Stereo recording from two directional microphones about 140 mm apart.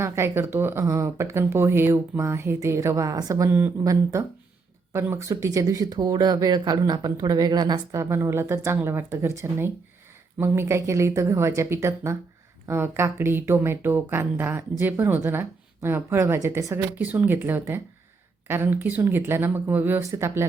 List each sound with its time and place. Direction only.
0.0 s speech: 20° right (ahead or behind)